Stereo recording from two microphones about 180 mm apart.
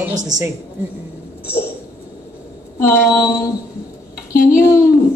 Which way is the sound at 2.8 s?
15° left (ahead or behind).